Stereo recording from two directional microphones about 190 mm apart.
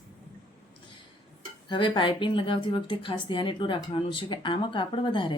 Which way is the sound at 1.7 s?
25° left (ahead or behind).